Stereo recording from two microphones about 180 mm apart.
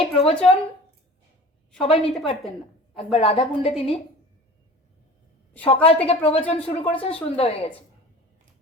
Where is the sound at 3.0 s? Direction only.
30° left (ahead or behind).